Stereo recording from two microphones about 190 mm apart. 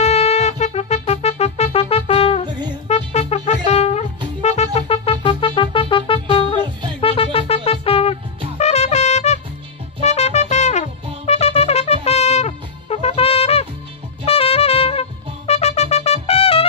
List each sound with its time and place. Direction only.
0.0 s music: 35° left (ahead or behind)
7.0 s wind instrument: 30° left (ahead or behind)
8.5 s trumpet: 35° left (ahead or behind)
10.0 s music: 35° left (ahead or behind)
14.2 s trumpet: 30° left (ahead or behind)